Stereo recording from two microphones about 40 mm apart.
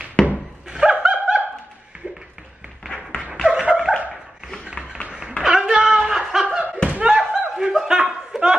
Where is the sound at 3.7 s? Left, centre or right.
Centre.